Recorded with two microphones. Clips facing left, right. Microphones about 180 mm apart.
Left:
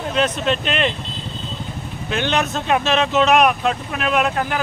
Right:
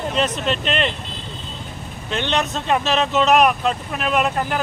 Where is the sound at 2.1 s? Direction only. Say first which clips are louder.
Left 1 dB; 5° left (ahead or behind).